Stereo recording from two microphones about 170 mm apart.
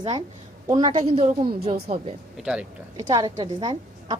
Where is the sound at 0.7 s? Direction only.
25° right (ahead or behind).